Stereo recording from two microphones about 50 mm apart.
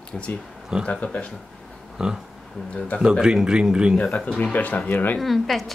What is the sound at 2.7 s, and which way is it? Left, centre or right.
Speech, left.